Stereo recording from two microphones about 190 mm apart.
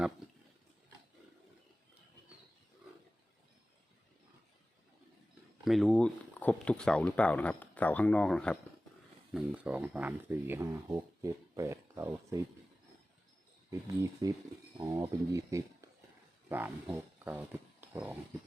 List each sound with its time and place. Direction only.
5.6 s speech: centre (ahead or behind); by 12.4 s 15° right (ahead or behind)
13.7 s speech: 15° right (ahead or behind)